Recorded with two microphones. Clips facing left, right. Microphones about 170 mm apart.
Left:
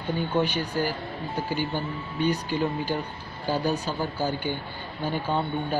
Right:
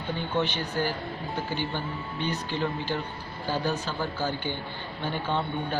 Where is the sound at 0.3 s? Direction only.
10° left (ahead or behind).